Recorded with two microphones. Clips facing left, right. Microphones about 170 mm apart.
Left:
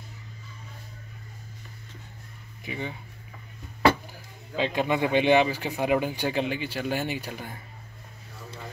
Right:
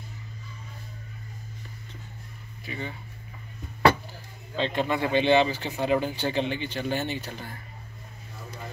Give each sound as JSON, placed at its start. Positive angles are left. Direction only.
{"t": 2.6, "sound": "speech", "side_deg": 15}
{"t": 4.6, "sound": "speech", "side_deg": 5}